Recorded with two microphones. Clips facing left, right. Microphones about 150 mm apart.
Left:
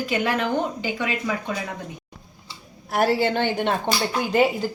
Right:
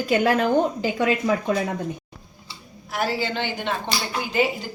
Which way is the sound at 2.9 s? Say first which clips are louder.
Left 5 dB; 55° left (ahead or behind).